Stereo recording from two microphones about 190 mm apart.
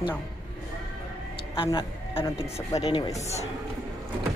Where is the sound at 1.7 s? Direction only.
25° left (ahead or behind).